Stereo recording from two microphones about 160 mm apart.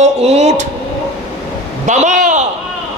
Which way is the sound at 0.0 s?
40° right (ahead or behind).